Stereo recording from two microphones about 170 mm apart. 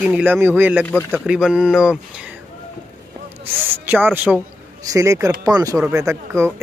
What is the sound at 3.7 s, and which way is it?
Speech, 10° right (ahead or behind).